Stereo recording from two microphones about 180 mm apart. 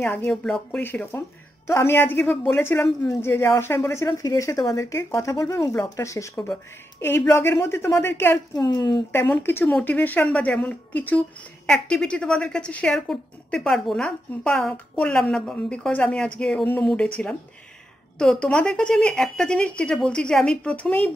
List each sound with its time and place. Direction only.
0.0 s speech: 10° left (ahead or behind)
0.8 s speech: 10° left (ahead or behind)
8.5 s speech: 25° left (ahead or behind)
9.1 s speech: 10° left (ahead or behind)
18.2 s speech: 5° left (ahead or behind)